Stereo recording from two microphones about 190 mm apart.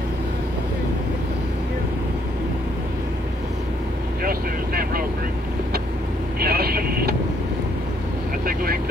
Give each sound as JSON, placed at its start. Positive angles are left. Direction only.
{"t": 4.2, "sound": "vehicle", "side_deg": -50}
{"t": 6.4, "sound": "vehicle", "side_deg": -55}